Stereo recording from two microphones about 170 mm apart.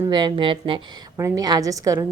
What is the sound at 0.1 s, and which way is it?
Speech, 25° right (ahead or behind).